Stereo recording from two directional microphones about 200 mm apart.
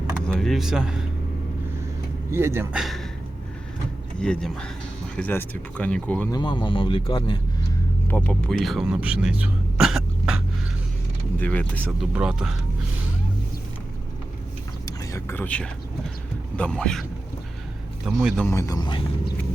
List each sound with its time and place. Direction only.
0.3 s a man's voice: centre (ahead or behind)
2.3 s speech: 10° right (ahead or behind)
2.8 s speech: centre (ahead or behind)
4.2 s speech: 5° left (ahead or behind)
6.3 s speech: 25° left (ahead or behind)
8.0 s speech: 10° left (ahead or behind)
11.3 s speech: 5° left (ahead or behind)
12.1 s speech: 5° right (ahead or behind)
14.8 s whispering: 15° left (ahead or behind)
16.6 s speech: 5° left (ahead or behind)
18.4 s speech: 15° left (ahead or behind)